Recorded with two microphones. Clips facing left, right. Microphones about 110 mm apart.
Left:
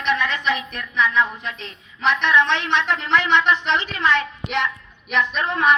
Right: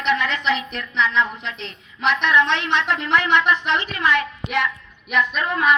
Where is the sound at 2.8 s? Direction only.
15° right (ahead or behind).